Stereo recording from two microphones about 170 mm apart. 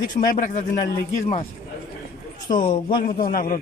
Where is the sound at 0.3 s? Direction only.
50° left (ahead or behind).